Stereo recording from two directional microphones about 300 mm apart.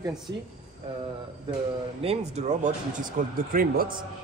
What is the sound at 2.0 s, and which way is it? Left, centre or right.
A man's voice, right.